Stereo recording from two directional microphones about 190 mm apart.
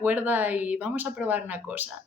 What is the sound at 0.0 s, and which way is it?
Speech, 10° right (ahead or behind).